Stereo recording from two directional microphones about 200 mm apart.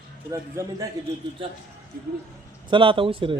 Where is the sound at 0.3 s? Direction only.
15° right (ahead or behind).